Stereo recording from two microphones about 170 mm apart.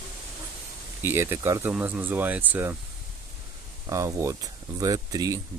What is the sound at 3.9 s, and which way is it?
Speech, 20° right (ahead or behind).